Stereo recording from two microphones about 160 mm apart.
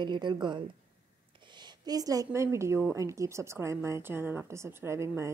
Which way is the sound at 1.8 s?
25° right (ahead or behind).